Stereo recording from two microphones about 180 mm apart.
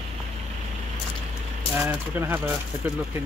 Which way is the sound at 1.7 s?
10° right (ahead or behind).